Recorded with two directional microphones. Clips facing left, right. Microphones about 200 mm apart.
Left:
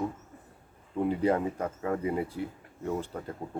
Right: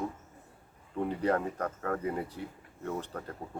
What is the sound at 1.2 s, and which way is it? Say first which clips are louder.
Speech: even; 10° left (ahead or behind).